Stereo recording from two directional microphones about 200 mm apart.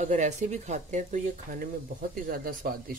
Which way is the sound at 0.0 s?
35° right (ahead or behind).